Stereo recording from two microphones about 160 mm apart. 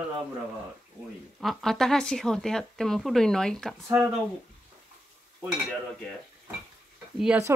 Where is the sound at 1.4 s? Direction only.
Centre (ahead or behind).